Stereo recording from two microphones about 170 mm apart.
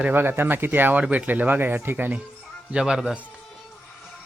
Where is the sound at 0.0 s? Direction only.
10° right (ahead or behind).